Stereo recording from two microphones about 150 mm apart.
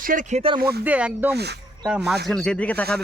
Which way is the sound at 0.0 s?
60° right (ahead or behind).